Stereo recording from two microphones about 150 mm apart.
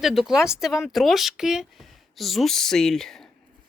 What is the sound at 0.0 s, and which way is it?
Speech, centre (ahead or behind).